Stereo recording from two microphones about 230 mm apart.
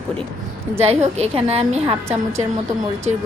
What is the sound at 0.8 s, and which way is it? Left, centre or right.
A woman's voice, right.